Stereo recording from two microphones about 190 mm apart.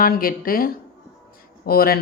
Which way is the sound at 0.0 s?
50° left (ahead or behind).